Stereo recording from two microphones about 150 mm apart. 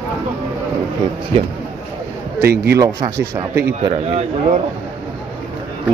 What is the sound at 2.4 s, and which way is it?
Speech, 90° right.